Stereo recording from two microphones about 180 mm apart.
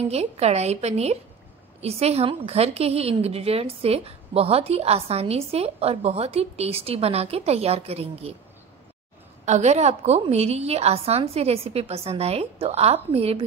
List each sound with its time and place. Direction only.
0.1 s a woman's voice: 35° right (ahead or behind)
9.5 s a woman's voice: 40° right (ahead or behind)